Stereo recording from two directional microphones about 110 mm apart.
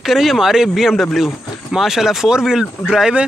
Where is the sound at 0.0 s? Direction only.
Centre (ahead or behind).